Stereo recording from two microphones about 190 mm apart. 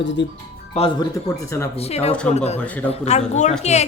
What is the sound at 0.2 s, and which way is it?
Speech, 70° left (ahead or behind).